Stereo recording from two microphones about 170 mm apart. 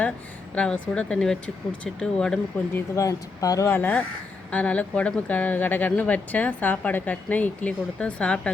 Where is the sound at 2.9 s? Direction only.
20° left (ahead or behind).